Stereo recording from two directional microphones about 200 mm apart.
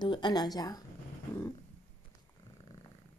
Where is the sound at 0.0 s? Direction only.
20° left (ahead or behind).